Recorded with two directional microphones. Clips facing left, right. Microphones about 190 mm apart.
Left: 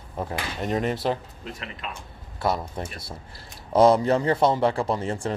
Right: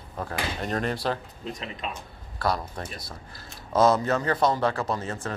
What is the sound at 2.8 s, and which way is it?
Speech, 25° left (ahead or behind).